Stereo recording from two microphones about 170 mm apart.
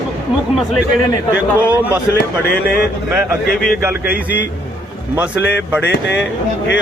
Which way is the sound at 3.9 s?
70° left (ahead or behind).